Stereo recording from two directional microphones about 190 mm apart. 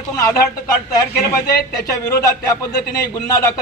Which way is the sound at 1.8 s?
15° left (ahead or behind).